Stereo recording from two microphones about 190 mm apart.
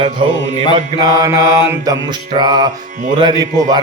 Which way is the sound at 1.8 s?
20° right (ahead or behind).